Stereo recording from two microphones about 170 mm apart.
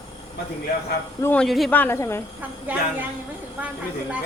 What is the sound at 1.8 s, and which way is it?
Speech, 15° left (ahead or behind).